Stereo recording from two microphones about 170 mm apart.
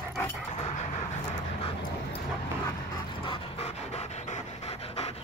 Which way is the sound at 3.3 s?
35° left (ahead or behind).